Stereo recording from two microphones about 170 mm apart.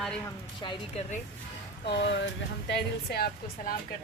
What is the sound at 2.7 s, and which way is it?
Speech, 65° left (ahead or behind).